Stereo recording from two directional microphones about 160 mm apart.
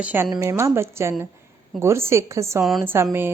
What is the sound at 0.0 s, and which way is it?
A woman's voice, 10° right (ahead or behind).